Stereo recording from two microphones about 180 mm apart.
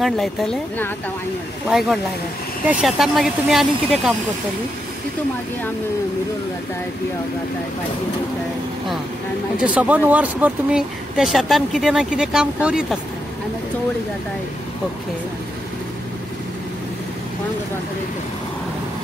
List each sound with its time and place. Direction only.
0.0 s speech: centre (ahead or behind)
9.6 s speech: 10° right (ahead or behind)